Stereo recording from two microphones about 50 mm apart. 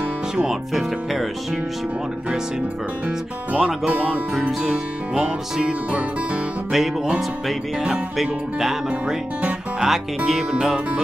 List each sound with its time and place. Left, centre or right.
0.4 s speech: centre
3.5 s speech: centre
8.2 s speech: centre
9.8 s speech: centre